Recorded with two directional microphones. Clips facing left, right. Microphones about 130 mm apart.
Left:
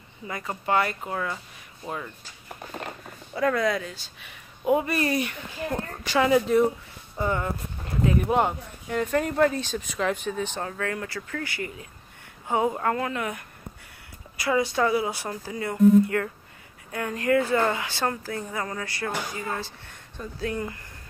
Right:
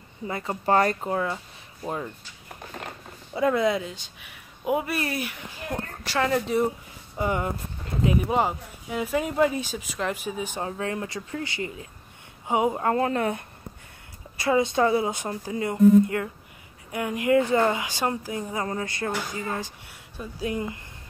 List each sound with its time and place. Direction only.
0.3 s speech: 30° right (ahead or behind)
1.1 s a woman's voice: 25° right (ahead or behind)
3.3 s a woman's voice: 20° right (ahead or behind)
4.3 s speech: 5° right (ahead or behind)
6.1 s speech: 10° left (ahead or behind)
7.2 s a woman's voice: 15° right (ahead or behind)
8.2 s speech: centre (ahead or behind)
10.7 s a woman's voice: 20° right (ahead or behind)
12.9 s a woman's voice: 35° right (ahead or behind); by 20.8 s 15° right (ahead or behind)